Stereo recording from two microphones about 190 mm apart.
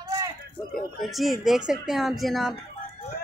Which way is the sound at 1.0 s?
Centre (ahead or behind).